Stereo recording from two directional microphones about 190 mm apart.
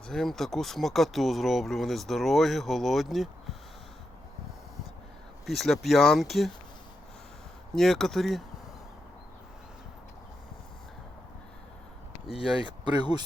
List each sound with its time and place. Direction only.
0.1 s speech: centre (ahead or behind)
5.5 s speech: centre (ahead or behind)
7.8 s speech: centre (ahead or behind)
12.6 s speech: 25° right (ahead or behind)